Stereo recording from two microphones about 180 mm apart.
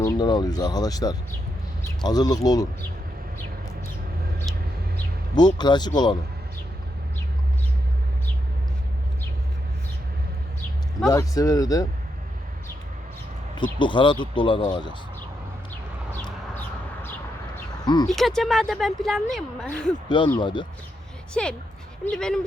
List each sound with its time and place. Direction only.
0.0 s speech: 25° left (ahead or behind)
5.5 s speech: 25° left (ahead or behind)
11.1 s speech: 20° left (ahead or behind)
13.6 s speech: 25° left (ahead or behind)
17.8 s speech: 25° left (ahead or behind)
18.1 s speech: centre (ahead or behind)
20.1 s speech: 25° left (ahead or behind)
21.4 s speech: 5° left (ahead or behind)